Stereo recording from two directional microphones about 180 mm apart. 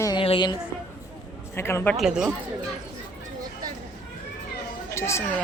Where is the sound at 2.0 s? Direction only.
5° right (ahead or behind).